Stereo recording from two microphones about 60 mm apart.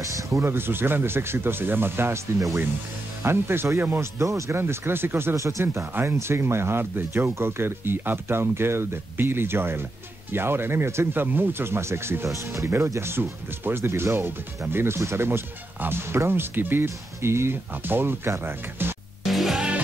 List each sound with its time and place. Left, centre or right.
0.0 s music: right
0.5 s speech: right
3.3 s speech: right
4.2 s speech: right
4.5 s speech: right
5.3 s speech: right
5.9 s speech: right
19.2 s music: centre